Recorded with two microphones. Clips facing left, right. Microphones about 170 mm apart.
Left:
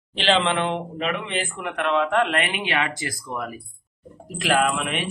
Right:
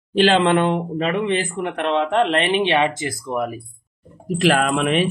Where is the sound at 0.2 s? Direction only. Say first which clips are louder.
Right 6 dB; 50° right (ahead or behind); by 3.6 s 25° right (ahead or behind).